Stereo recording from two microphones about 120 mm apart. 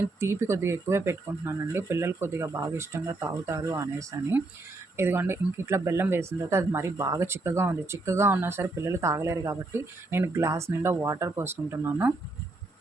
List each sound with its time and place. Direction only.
0.2 s speech: 25° right (ahead or behind)
4.9 s speech: 20° right (ahead or behind)